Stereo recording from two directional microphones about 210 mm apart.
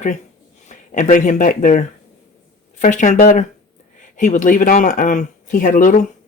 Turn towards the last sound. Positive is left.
turn(degrees=40)  # may be behind; listen again after turning